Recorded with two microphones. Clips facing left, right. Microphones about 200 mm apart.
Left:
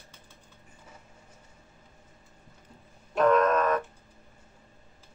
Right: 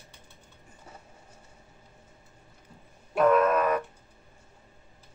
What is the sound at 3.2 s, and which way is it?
Music, 10° right (ahead or behind).